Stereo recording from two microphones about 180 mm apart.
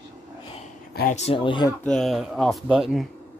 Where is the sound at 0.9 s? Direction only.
55° left (ahead or behind).